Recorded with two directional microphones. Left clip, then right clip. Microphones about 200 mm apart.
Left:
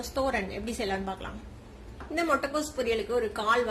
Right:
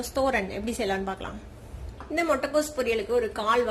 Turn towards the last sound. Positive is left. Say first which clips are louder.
# right 2 dB
turn(degrees=-10)  # may be behind; listen again after turning